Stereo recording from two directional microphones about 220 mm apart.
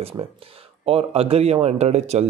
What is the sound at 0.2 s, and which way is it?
Speech, 30° right (ahead or behind).